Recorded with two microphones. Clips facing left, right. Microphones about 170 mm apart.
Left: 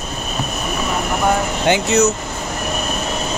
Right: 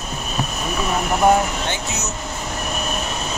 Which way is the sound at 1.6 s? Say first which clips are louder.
Left 11 dB; 75° left (ahead or behind).